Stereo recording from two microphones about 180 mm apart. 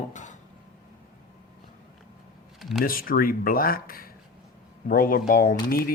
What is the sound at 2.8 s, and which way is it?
Speech, 55° left (ahead or behind).